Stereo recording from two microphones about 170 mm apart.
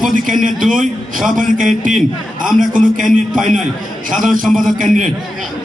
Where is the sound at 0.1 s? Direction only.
50° right (ahead or behind).